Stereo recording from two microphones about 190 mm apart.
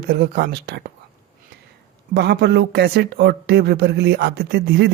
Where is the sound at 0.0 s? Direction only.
55° right (ahead or behind).